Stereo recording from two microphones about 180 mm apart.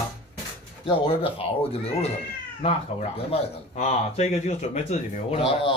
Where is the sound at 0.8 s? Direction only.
30° left (ahead or behind).